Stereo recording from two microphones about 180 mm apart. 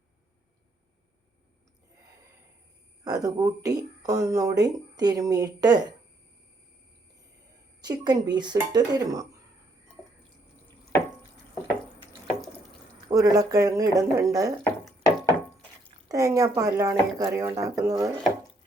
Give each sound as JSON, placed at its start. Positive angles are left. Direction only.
{"t": 3.0, "sound": "speech", "side_deg": -20}
{"t": 7.8, "sound": "speech", "side_deg": -20}
{"t": 13.1, "sound": "speech", "side_deg": -20}
{"t": 15.0, "sound": "wood", "side_deg": 15}
{"t": 16.0, "sound": "speech", "side_deg": -20}